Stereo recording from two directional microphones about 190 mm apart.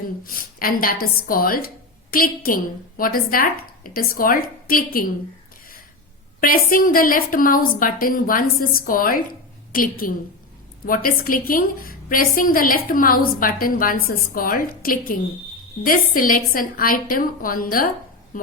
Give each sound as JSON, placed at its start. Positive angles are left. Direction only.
{"t": 0.3, "sound": "a woman's voice", "side_deg": 50}
{"t": 6.4, "sound": "a woman's voice", "side_deg": 50}